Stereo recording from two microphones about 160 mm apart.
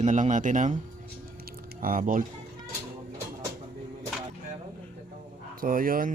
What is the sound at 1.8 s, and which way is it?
Speech, 60° right (ahead or behind).